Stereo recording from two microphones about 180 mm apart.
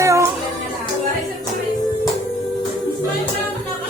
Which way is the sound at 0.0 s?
15° right (ahead or behind).